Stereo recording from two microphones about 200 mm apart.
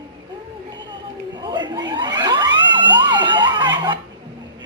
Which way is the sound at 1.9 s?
20° right (ahead or behind).